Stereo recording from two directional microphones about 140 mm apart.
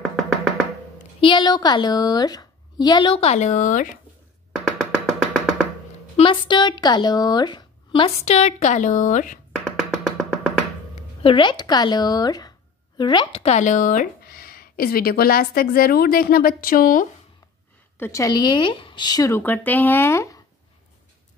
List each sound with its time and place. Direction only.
0.0 s finger snapping: centre (ahead or behind)
1.2 s speech: 35° left (ahead or behind); by 4.0 s 70° left (ahead or behind)
4.5 s music: 5° left (ahead or behind)
6.1 s speech: 35° left (ahead or behind); by 9.4 s 65° left (ahead or behind)
9.5 s music: 5° left (ahead or behind)
11.2 s a woman's voice: 35° left (ahead or behind)
13.4 s speech: 55° left (ahead or behind); by 17.1 s 85° left
17.9 s speech: 20° left (ahead or behind)